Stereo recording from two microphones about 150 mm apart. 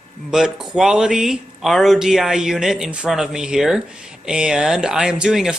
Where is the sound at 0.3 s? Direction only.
5° right (ahead or behind).